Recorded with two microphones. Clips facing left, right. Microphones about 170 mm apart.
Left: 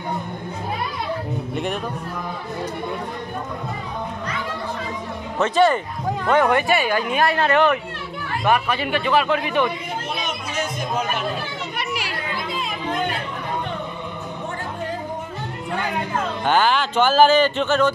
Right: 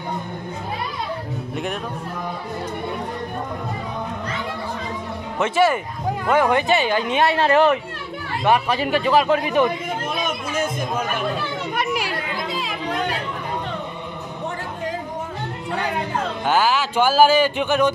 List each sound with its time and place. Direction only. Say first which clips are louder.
5.4 s speech: left 1 dB; 10° right (ahead or behind)
6.7 s speech: right 1 dB; 25° right (ahead or behind)
8.7 s speech: right 2 dB; 35° right (ahead or behind)
10.2 s music: right 3 dB; 50° right (ahead or behind)
11.8 s children playing: right 5 dB; 50° right (ahead or behind)
16.4 s speech: left 1 dB; 5° right (ahead or behind)